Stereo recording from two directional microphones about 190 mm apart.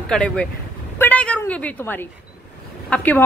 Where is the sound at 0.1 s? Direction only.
5° left (ahead or behind).